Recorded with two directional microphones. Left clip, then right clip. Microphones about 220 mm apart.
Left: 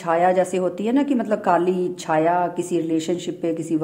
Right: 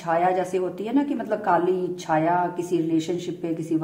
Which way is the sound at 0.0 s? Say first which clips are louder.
Left 4 dB; 45° left (ahead or behind).